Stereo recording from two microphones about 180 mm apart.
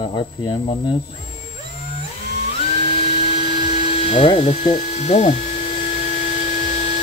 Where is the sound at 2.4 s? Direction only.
30° left (ahead or behind).